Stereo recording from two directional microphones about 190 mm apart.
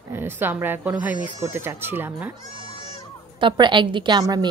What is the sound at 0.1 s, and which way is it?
Speech, 10° right (ahead or behind).